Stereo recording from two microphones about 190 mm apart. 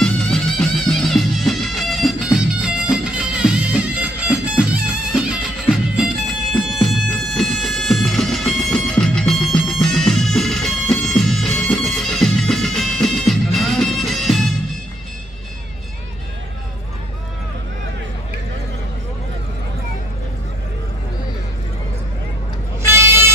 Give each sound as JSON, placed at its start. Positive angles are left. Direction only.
{"t": 0.0, "sound": "music", "side_deg": 5}
{"t": 5.9, "sound": "music", "side_deg": 0}
{"t": 22.8, "sound": "vehicle", "side_deg": -15}